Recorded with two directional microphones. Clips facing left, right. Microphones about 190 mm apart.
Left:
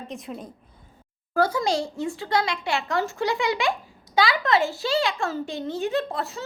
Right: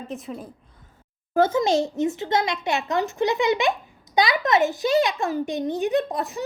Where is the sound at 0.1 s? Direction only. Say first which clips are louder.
Right 3 dB; 5° right (ahead or behind).